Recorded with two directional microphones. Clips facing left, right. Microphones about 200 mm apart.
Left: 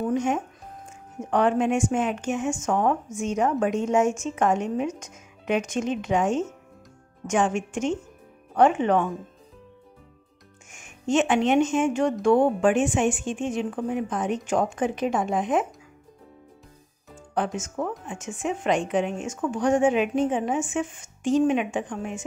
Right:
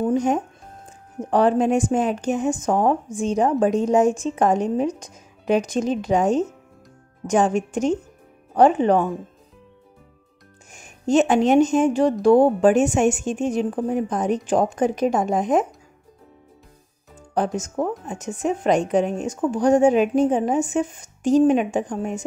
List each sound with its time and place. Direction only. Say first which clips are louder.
0.0 s speech: right 4 dB; 35° right (ahead or behind)
10.7 s speech: right 5 dB; 35° right (ahead or behind)
17.3 s speech: right 4 dB; 40° right (ahead or behind)